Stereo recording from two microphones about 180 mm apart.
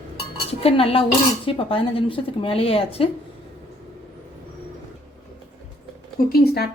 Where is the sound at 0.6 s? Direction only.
30° left (ahead or behind).